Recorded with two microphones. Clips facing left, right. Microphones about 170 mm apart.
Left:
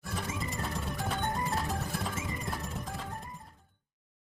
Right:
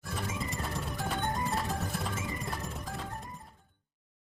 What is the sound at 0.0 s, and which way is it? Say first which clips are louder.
Music: even; centre (ahead or behind).